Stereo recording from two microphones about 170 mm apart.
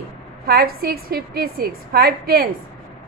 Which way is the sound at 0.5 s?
60° right (ahead or behind).